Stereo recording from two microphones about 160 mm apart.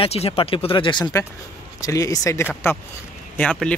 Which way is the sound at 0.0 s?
40° left (ahead or behind).